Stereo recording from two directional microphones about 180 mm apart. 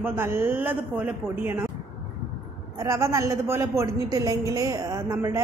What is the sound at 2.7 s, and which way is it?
A woman's voice, 15° right (ahead or behind).